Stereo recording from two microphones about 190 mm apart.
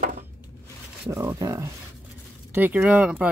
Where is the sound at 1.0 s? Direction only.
15° right (ahead or behind).